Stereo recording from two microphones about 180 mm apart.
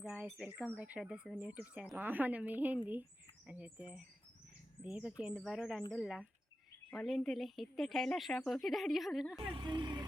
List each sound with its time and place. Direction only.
0.0 s speech: 5° right (ahead or behind)
9.6 s speech: 25° right (ahead or behind)